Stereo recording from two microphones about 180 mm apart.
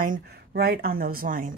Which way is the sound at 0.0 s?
55° right (ahead or behind).